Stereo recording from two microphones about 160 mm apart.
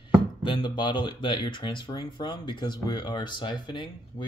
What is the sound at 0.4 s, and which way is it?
Speech, 30° left (ahead or behind).